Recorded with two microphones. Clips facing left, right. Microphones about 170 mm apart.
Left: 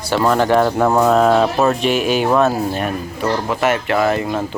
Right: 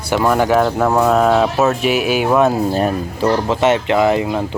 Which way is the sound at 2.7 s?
30° right (ahead or behind).